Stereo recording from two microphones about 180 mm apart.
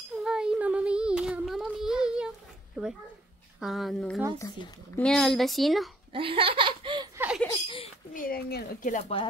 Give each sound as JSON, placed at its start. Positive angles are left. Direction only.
{"t": 0.2, "sound": "child singing", "side_deg": -5}
{"t": 2.8, "sound": "a sound", "side_deg": -5}
{"t": 3.5, "sound": "speech", "side_deg": 0}
{"t": 4.4, "sound": "speech", "side_deg": 25}
{"t": 4.9, "sound": "speech", "side_deg": 5}
{"t": 6.1, "sound": "laughter", "side_deg": -30}
{"t": 7.2, "sound": "laughter", "side_deg": -5}
{"t": 7.5, "sound": "a sound", "side_deg": 30}
{"t": 8.1, "sound": "speech", "side_deg": 50}